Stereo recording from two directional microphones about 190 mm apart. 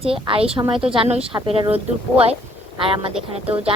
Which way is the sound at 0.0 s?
30° right (ahead or behind).